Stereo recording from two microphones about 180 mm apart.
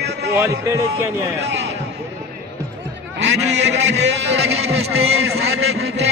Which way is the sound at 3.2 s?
75° right (ahead or behind).